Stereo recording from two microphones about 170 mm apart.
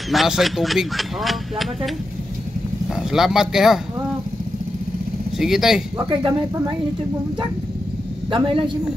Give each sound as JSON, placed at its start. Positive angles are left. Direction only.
{"t": 0.1, "sound": "speech", "side_deg": 0}
{"t": 2.9, "sound": "speech", "side_deg": -5}
{"t": 5.4, "sound": "speech", "side_deg": 0}
{"t": 6.0, "sound": "speech", "side_deg": -30}
{"t": 8.3, "sound": "speech", "side_deg": -30}